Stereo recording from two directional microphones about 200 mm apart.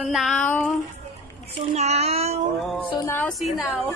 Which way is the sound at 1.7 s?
30° right (ahead or behind).